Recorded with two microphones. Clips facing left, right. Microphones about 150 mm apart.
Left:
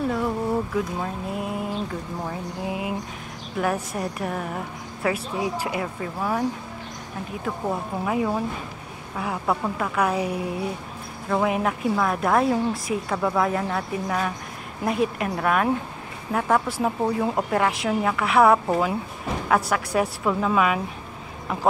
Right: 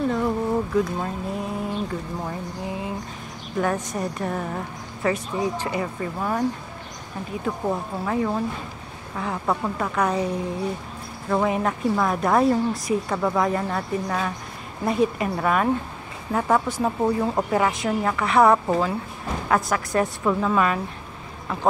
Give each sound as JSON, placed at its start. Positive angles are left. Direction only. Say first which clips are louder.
{"t": 0.1, "sound": "speech", "louder": "right 1 dB", "side_deg": 5}
{"t": 2.6, "sound": "a woman's voice", "louder": "left 3 dB", "side_deg": 15}
{"t": 7.4, "sound": "a woman's voice", "louder": "right 2 dB", "side_deg": 0}